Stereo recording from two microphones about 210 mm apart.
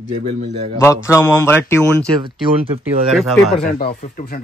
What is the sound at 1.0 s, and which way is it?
Speech, 10° left (ahead or behind).